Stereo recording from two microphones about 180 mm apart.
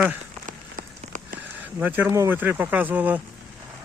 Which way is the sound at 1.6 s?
10° right (ahead or behind).